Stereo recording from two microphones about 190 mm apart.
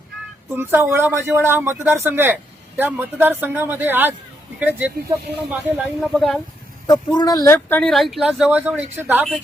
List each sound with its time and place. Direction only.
0.5 s speech: 10° right (ahead or behind)
6.8 s speech: 20° left (ahead or behind)
7.8 s speech: centre (ahead or behind)